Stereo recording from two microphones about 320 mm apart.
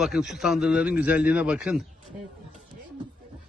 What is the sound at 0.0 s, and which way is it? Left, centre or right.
A man's voice, centre.